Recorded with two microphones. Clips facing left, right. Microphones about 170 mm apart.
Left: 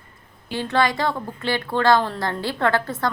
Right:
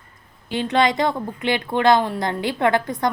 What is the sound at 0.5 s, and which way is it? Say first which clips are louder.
A woman's voice: right 2 dB; 20° right (ahead or behind).